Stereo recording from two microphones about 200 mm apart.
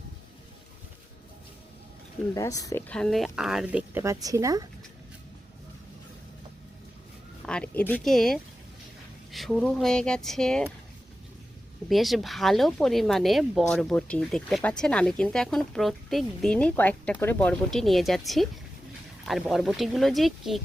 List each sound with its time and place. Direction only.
2.3 s speech: 15° left (ahead or behind); by 4.6 s 15° right (ahead or behind)
7.4 s speech: 5° left (ahead or behind)
11.9 s speech: centre (ahead or behind)
19.2 s speech: centre (ahead or behind)